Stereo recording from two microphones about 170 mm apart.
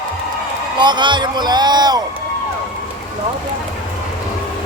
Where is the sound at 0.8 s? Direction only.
25° right (ahead or behind).